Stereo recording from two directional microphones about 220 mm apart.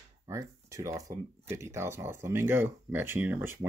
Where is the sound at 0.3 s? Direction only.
15° right (ahead or behind).